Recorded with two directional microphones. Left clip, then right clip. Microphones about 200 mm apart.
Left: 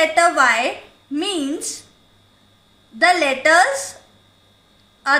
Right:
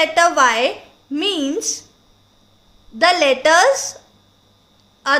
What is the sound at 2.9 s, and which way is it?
Speech, 55° right (ahead or behind).